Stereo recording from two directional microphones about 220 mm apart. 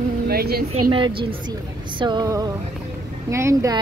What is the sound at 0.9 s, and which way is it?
A woman's voice, 20° right (ahead or behind).